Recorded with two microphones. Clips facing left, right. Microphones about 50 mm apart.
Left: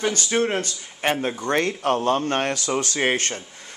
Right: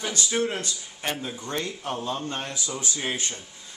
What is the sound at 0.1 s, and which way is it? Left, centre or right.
Speech, left.